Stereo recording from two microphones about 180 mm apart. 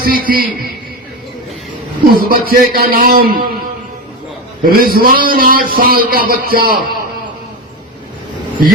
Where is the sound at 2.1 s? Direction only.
55° right (ahead or behind).